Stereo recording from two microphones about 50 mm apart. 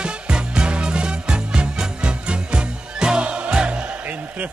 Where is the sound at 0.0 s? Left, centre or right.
Centre.